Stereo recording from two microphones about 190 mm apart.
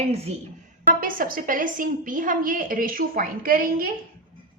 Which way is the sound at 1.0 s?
45° right (ahead or behind).